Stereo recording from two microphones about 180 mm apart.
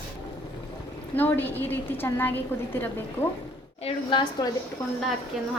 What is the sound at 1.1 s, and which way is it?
Speech, 10° left (ahead or behind).